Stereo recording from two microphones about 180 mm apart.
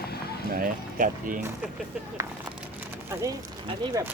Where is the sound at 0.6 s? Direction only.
50° right (ahead or behind).